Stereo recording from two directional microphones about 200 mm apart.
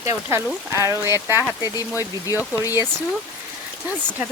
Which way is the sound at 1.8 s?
15° left (ahead or behind).